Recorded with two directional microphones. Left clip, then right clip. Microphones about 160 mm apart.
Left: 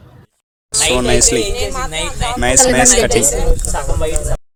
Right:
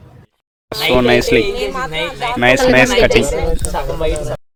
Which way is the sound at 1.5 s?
50° right (ahead or behind).